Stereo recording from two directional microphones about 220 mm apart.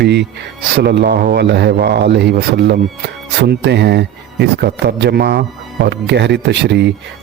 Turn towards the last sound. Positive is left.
turn(degrees=-50)  # may be behind; listen again after turning